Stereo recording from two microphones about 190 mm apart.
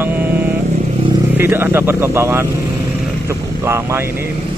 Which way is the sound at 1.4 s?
10° right (ahead or behind).